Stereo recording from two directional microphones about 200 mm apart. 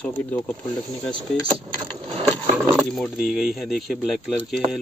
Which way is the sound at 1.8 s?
25° right (ahead or behind).